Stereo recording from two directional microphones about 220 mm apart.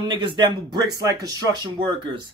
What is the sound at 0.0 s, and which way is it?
Speech, 20° right (ahead or behind).